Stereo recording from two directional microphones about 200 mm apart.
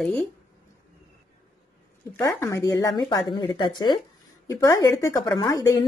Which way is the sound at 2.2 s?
15° left (ahead or behind).